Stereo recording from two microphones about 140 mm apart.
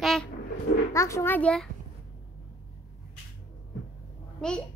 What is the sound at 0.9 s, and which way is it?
Speech, 20° left (ahead or behind).